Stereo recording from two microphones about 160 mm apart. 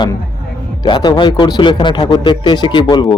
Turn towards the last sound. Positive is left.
turn(degrees=25)  # may be behind; listen again after turning